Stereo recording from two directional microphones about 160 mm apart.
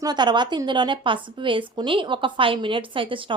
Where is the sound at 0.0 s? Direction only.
25° right (ahead or behind).